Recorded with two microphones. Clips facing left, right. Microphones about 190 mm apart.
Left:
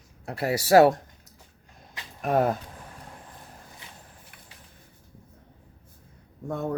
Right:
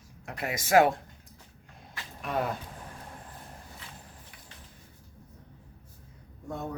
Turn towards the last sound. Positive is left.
turn(degrees=55)  # may be behind; listen again after turning